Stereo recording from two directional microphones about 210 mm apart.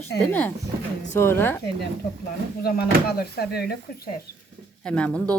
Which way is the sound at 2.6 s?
45° left (ahead or behind).